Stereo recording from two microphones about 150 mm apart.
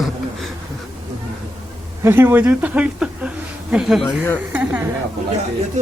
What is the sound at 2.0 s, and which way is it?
A woman's voice, 15° right (ahead or behind).